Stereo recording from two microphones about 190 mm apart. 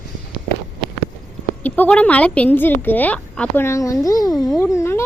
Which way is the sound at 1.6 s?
10° left (ahead or behind).